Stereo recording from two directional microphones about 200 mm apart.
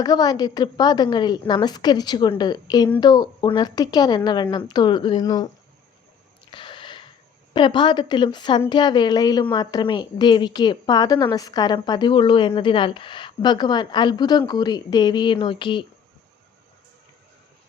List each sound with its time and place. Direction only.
0.0 s a woman's voice: 20° left (ahead or behind)
6.5 s a sound: 25° left (ahead or behind)
7.5 s a woman's voice: 25° left (ahead or behind)